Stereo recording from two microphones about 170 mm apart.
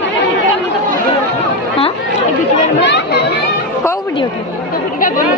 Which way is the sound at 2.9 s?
90° left.